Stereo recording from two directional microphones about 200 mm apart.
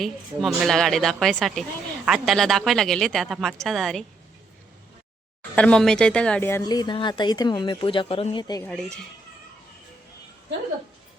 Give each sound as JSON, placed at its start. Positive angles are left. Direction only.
{"t": 0.0, "sound": "speech", "side_deg": 0}
{"t": 5.5, "sound": "a woman's voice", "side_deg": 5}